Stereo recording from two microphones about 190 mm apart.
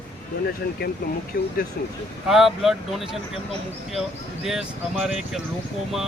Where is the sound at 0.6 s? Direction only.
55° left (ahead or behind).